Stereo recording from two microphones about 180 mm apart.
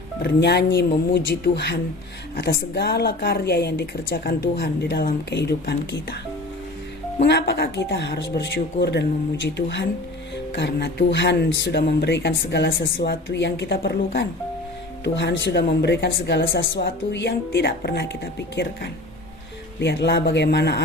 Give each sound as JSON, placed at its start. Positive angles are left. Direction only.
{"t": 0.2, "sound": "speech", "side_deg": 65}
{"t": 7.3, "sound": "speech", "side_deg": 65}